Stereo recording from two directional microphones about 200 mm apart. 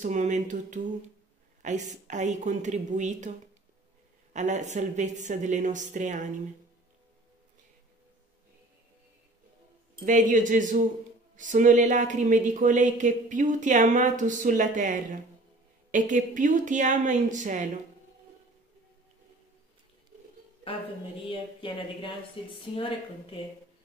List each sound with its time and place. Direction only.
0.0 s speech: 40° right (ahead or behind)
4.3 s speech: 35° right (ahead or behind)
10.0 s speech: 40° right (ahead or behind)
21.3 s speech: 25° left (ahead or behind)